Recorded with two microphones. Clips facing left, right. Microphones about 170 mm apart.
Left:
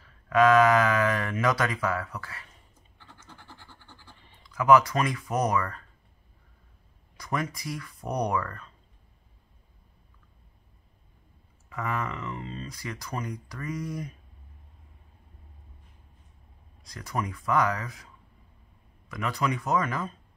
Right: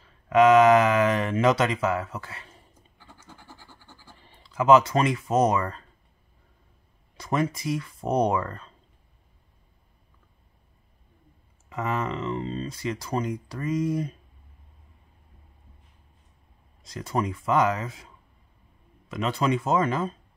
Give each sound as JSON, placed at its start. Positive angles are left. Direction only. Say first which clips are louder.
{"t": 0.3, "sound": "speech", "louder": "right 4 dB", "side_deg": -20}
{"t": 3.0, "sound": "a sound", "louder": "right 2 dB", "side_deg": -10}
{"t": 4.4, "sound": "speech", "louder": "right 2 dB", "side_deg": -25}
{"t": 7.2, "sound": "speech", "louder": "right 5 dB", "side_deg": -25}
{"t": 11.7, "sound": "speech", "louder": "right 4 dB", "side_deg": -25}
{"t": 16.8, "sound": "speech", "louder": "right 5 dB", "side_deg": -25}
{"t": 19.0, "sound": "speech", "louder": "right 4 dB", "side_deg": -25}